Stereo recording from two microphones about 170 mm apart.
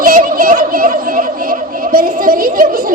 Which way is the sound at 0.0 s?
55° right (ahead or behind).